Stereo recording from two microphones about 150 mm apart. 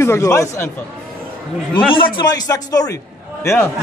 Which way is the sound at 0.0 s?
20° left (ahead or behind).